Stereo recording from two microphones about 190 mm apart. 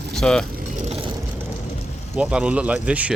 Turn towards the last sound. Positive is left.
turn(degrees=-5)  # may be behind; listen again after turning